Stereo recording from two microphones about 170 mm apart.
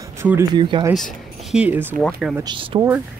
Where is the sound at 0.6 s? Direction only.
30° right (ahead or behind).